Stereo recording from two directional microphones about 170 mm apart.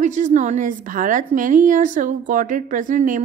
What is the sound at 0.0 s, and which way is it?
A woman's voice, 45° right (ahead or behind).